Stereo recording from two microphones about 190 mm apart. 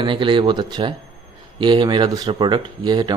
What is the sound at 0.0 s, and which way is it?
Speech, 25° right (ahead or behind).